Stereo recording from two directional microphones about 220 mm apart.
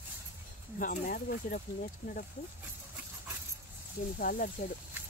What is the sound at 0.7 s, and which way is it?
Speech, 40° left (ahead or behind).